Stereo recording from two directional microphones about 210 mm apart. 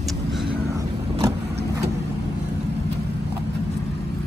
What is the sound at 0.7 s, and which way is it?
Vehicle, 15° right (ahead or behind).